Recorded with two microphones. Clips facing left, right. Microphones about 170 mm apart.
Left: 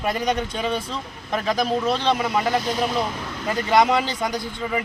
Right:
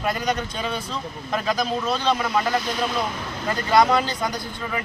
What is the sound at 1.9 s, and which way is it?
Speech, 25° left (ahead or behind).